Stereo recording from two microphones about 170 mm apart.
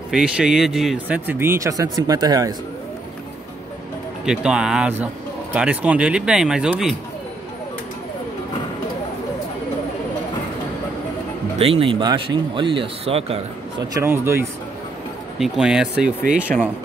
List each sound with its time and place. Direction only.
0.1 s speech: 5° right (ahead or behind); by 2.5 s 20° right (ahead or behind)
4.3 s speech: 5° right (ahead or behind)
11.5 s speech: 35° right (ahead or behind)
13.9 s speech: 15° right (ahead or behind)
15.3 s speech: centre (ahead or behind)